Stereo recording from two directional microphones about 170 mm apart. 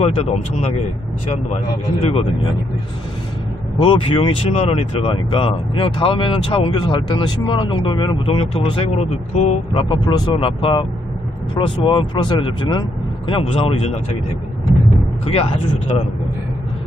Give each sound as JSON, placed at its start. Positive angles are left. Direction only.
{"t": 0.0, "sound": "speech", "side_deg": 40}
{"t": 2.0, "sound": "speech", "side_deg": 35}
{"t": 3.8, "sound": "speech", "side_deg": 35}
{"t": 9.8, "sound": "speech", "side_deg": 25}
{"t": 15.2, "sound": "speech", "side_deg": 35}